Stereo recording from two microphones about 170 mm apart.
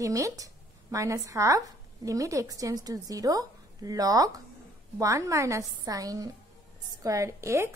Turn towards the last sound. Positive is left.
turn(degrees=-15)  # may be behind; listen again after turning